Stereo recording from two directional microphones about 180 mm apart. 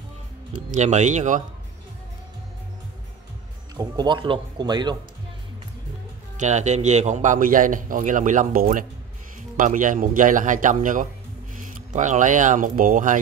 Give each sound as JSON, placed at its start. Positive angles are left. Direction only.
{"t": 0.7, "sound": "a man's voice", "side_deg": -40}
{"t": 3.7, "sound": "speech", "side_deg": -25}
{"t": 6.3, "sound": "a man's voice", "side_deg": -40}